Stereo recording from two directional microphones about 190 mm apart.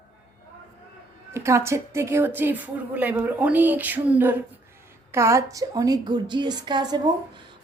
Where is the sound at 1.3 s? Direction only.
15° right (ahead or behind).